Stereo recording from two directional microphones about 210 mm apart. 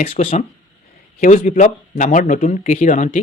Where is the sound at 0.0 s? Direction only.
30° left (ahead or behind).